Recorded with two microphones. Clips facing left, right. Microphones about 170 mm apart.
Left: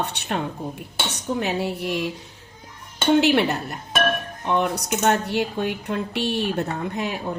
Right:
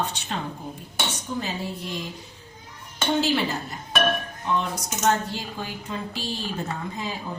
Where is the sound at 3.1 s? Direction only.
65° left (ahead or behind).